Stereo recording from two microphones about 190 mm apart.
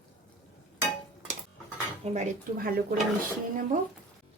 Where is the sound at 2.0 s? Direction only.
35° right (ahead or behind).